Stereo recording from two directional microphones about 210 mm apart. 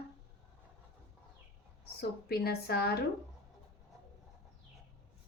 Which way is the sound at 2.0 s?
50° left (ahead or behind).